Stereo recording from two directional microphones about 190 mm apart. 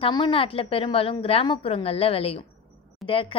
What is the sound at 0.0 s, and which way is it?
A woman's voice, 25° left (ahead or behind).